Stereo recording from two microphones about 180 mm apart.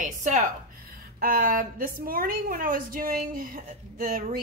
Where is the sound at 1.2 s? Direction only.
55° right (ahead or behind).